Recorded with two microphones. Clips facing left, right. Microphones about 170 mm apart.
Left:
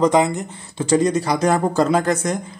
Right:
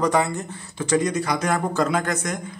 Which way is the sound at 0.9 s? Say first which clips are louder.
Left 4 dB; 30° left (ahead or behind).